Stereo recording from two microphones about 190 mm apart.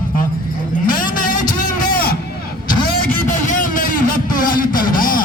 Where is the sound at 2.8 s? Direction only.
45° left (ahead or behind).